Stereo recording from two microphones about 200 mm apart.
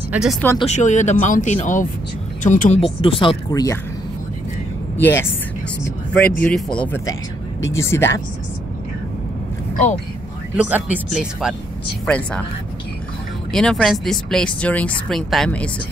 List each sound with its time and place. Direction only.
0.1 s speech: 5° right (ahead or behind)
0.6 s speech: 35° left (ahead or behind); by 3.8 s 15° left (ahead or behind)
5.0 s speech: 10° left (ahead or behind)
10.5 s speech: 5° right (ahead or behind)
12.1 s speech: 5° left (ahead or behind)
13.5 s speech: 5° left (ahead or behind)